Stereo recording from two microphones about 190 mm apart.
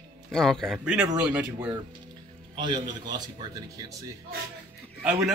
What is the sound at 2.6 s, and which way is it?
A man's voice, 20° right (ahead or behind).